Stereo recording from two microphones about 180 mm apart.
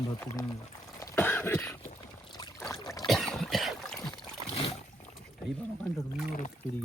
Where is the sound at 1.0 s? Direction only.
10° left (ahead or behind).